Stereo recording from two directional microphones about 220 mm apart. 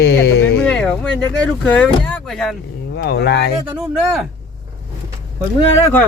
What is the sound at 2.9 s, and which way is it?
Speech, 50° left (ahead or behind).